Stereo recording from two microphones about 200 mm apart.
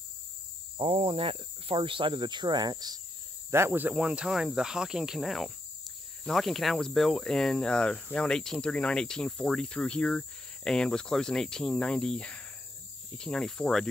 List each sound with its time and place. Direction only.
0.7 s speech: 30° right (ahead or behind); by 13.8 s centre (ahead or behind)